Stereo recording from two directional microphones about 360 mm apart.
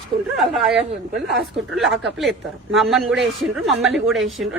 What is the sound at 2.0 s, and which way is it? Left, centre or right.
A woman's voice, centre.